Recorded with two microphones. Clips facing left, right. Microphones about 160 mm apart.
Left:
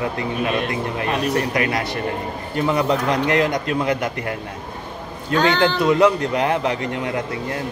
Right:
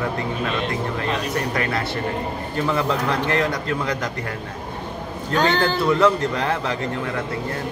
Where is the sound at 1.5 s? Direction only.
15° left (ahead or behind).